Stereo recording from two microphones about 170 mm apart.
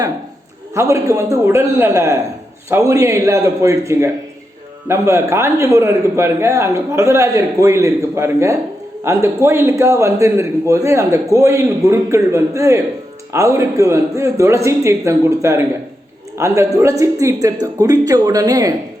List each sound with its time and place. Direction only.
0.7 s a man's voice: 15° right (ahead or behind)